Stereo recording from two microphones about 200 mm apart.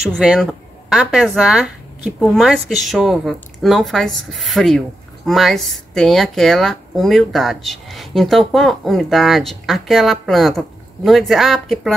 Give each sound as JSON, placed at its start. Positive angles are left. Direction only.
{"t": 0.0, "sound": "speech", "side_deg": 0}